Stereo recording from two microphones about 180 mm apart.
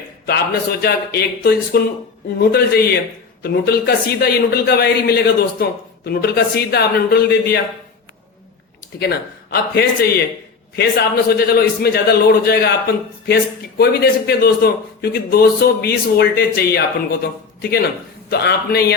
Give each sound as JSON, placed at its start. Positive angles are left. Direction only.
{"t": 0.3, "sound": "a man's voice", "side_deg": 60}
{"t": 9.0, "sound": "a man's voice", "side_deg": 60}